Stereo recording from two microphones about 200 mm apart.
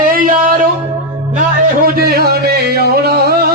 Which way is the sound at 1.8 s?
50° right (ahead or behind).